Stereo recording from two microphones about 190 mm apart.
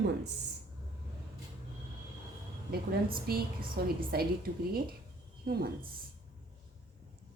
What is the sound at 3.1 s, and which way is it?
A woman's voice, 50° right (ahead or behind).